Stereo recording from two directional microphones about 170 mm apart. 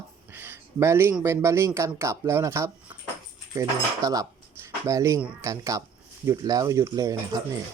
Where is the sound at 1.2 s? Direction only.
15° right (ahead or behind).